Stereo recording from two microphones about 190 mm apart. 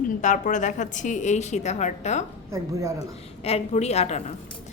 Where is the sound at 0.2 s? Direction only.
40° left (ahead or behind).